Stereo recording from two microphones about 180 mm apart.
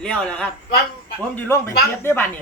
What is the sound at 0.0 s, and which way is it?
Speech, 5° left (ahead or behind).